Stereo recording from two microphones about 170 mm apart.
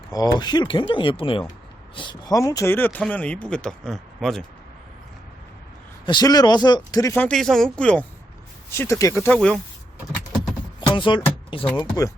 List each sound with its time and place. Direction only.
0.1 s speech: 25° left (ahead or behind); by 4.4 s centre (ahead or behind)
6.1 s speech: 25° left (ahead or behind); by 9.6 s 5° left (ahead or behind)
10.8 s a sound: 30° left (ahead or behind)
11.8 s speech: 20° left (ahead or behind)